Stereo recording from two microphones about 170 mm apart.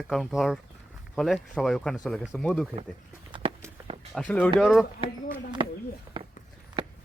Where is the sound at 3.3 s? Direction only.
30° right (ahead or behind).